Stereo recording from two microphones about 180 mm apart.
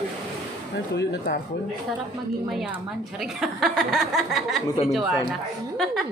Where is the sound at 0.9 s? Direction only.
75° left (ahead or behind).